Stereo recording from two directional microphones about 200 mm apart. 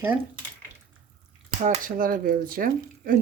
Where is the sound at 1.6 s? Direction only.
45° right (ahead or behind).